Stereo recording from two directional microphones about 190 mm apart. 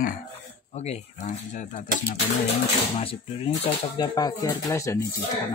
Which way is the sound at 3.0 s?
30° left (ahead or behind).